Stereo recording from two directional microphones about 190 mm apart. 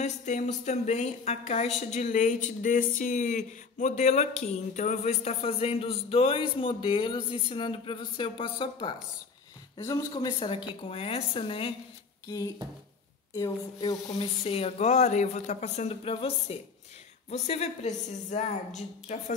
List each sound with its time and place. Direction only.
0.0 s speech: 40° left (ahead or behind)
13.3 s speech: 20° left (ahead or behind)
14.1 s speech: 30° left (ahead or behind)